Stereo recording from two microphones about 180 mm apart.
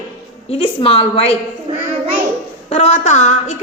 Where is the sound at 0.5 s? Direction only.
30° left (ahead or behind).